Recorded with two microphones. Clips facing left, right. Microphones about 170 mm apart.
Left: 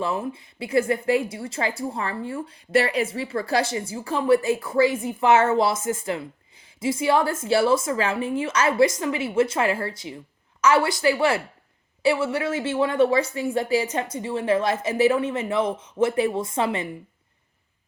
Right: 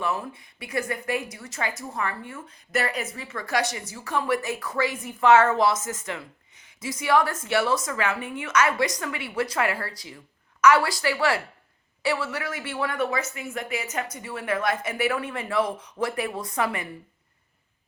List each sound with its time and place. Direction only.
0.0 s a woman's voice: 25° left (ahead or behind)